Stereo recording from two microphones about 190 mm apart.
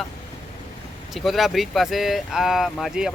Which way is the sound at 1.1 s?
Centre (ahead or behind).